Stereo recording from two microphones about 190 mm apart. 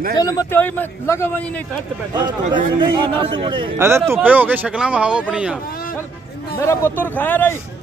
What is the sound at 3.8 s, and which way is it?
Speech, 15° right (ahead or behind).